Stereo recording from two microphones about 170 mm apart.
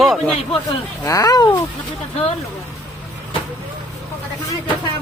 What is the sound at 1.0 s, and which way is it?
Speech, 20° left (ahead or behind).